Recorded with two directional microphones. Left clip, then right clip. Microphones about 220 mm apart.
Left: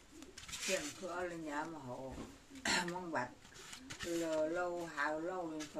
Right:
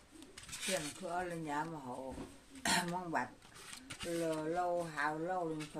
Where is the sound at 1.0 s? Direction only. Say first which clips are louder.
Right 3 dB; 40° right (ahead or behind).